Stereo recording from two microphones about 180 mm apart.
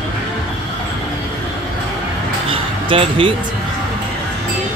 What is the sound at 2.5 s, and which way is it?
Basketball bounce, 30° right (ahead or behind).